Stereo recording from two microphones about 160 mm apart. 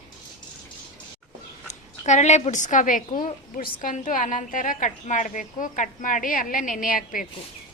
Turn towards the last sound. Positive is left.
turn(degrees=60)  # may be behind; listen again after turning